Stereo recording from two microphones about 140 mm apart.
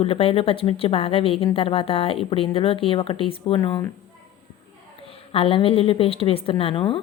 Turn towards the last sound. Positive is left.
turn(degrees=40)  # may be behind; listen again after turning